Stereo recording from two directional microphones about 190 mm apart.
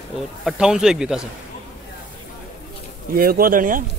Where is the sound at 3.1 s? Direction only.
50° right (ahead or behind).